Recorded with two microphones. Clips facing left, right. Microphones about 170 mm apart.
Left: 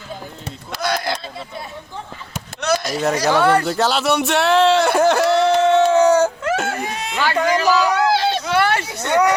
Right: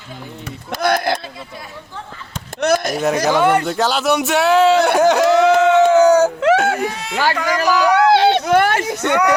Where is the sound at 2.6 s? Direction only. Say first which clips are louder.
Right 4 dB; 55° right (ahead or behind).